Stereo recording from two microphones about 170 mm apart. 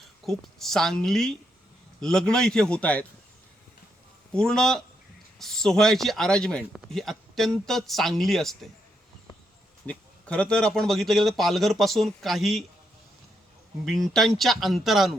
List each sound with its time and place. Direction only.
0.3 s speech: centre (ahead or behind)
4.3 s speech: 5° left (ahead or behind)
9.8 s speech: 5° left (ahead or behind)
13.8 s speech: centre (ahead or behind)